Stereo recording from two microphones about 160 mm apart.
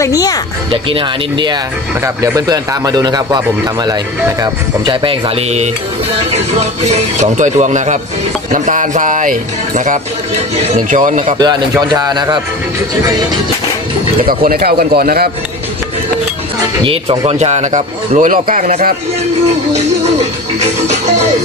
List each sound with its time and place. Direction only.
0.0 s speech: 20° left (ahead or behind)
0.7 s speech: 35° right (ahead or behind)
6.9 s speech: 50° right (ahead or behind)
11.3 s speech: 25° right (ahead or behind)
14.2 s a man's voice: 65° right (ahead or behind)
16.8 s speech: 35° right (ahead or behind)